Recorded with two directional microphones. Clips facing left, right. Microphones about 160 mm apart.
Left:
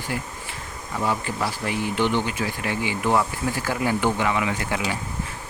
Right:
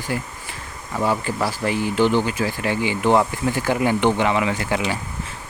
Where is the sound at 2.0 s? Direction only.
35° right (ahead or behind).